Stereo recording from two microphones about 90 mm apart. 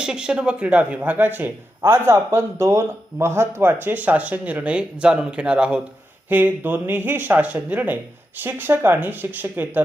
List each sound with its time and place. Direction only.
0.0 s a man's voice: 10° right (ahead or behind)